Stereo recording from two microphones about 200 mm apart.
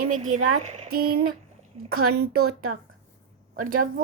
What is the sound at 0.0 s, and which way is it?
Speech, 40° right (ahead or behind).